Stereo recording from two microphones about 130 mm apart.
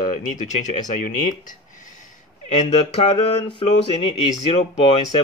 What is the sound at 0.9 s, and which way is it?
Speech, 85° left.